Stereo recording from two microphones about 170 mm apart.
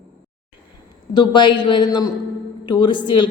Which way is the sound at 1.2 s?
25° left (ahead or behind).